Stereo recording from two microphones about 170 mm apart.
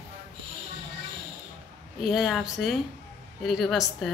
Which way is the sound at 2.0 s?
Centre (ahead or behind).